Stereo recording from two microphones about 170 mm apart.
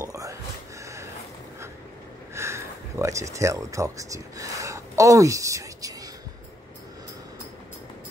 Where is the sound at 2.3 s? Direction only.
15° right (ahead or behind).